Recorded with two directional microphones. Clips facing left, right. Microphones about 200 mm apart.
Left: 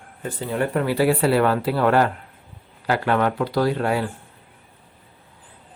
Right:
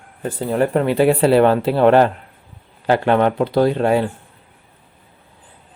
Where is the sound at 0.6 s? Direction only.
25° right (ahead or behind).